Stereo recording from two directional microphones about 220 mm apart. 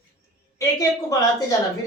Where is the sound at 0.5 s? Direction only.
15° left (ahead or behind).